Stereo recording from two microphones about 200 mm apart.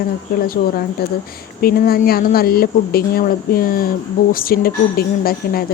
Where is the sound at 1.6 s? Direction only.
50° left (ahead or behind).